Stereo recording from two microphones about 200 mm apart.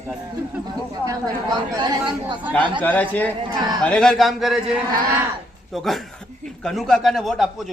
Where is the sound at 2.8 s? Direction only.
10° left (ahead or behind).